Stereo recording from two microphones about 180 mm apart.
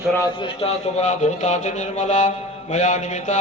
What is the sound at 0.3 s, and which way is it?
A man's voice, 30° left (ahead or behind).